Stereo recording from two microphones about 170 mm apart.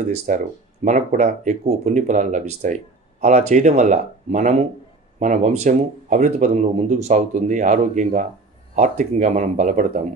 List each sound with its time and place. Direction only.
0.0 s speech: 45° right (ahead or behind)